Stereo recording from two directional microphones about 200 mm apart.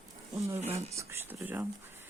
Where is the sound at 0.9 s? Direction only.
15° right (ahead or behind).